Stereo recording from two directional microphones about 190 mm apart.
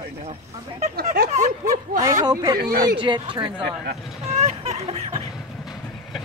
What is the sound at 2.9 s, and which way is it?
Speech, 25° right (ahead or behind).